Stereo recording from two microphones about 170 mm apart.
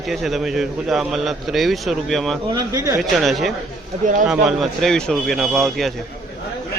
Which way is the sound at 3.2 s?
Centre (ahead or behind).